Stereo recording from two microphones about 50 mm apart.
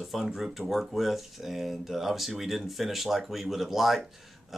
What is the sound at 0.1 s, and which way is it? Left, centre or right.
Speech, centre.